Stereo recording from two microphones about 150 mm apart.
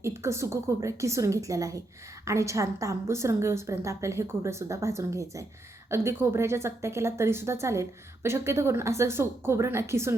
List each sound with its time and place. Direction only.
0.0 s a woman's voice: 20° right (ahead or behind)